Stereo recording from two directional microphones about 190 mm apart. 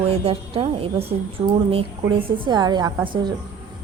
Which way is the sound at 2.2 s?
25° right (ahead or behind).